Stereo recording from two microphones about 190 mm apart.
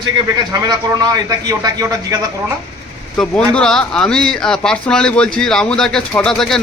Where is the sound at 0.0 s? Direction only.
20° right (ahead or behind).